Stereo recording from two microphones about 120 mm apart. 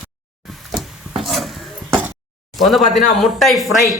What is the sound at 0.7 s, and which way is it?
Wood, centre (ahead or behind).